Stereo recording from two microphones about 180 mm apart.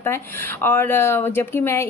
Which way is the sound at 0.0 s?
10° left (ahead or behind).